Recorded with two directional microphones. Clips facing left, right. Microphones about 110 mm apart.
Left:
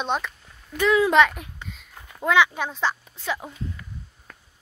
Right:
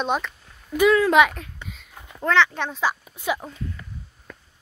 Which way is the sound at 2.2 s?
10° left (ahead or behind).